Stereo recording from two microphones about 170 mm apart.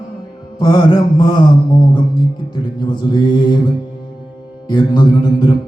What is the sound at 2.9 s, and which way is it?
Music, 25° left (ahead or behind).